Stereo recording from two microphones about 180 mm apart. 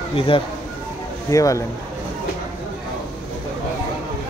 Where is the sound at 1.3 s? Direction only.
20° left (ahead or behind).